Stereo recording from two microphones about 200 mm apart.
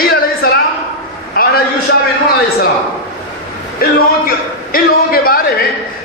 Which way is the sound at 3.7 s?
45° left (ahead or behind).